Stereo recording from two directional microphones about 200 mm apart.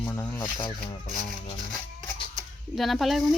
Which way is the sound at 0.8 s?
40° left (ahead or behind).